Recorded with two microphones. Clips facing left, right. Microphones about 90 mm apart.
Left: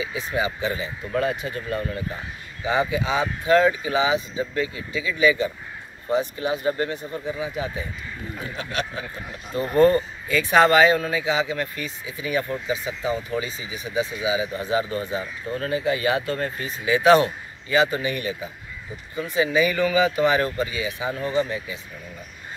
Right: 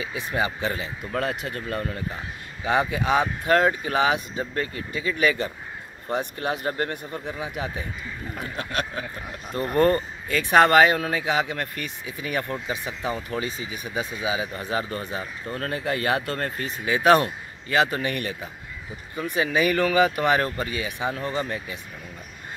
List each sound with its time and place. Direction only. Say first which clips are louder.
0.0 s speech: left 1 dB; 50° right (ahead or behind)
8.4 s speech: even; 50° right (ahead or behind)